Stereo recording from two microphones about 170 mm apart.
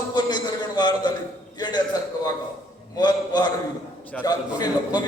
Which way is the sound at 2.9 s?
25° left (ahead or behind).